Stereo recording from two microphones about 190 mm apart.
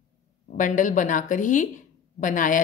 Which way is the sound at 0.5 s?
40° left (ahead or behind).